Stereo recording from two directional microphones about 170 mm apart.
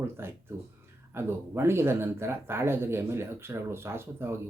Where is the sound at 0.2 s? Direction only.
15° right (ahead or behind).